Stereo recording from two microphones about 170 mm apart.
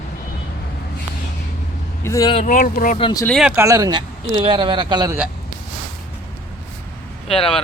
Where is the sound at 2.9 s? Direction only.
30° left (ahead or behind).